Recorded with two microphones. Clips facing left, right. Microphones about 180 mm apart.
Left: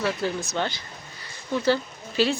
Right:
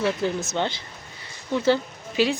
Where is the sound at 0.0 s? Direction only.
25° right (ahead or behind).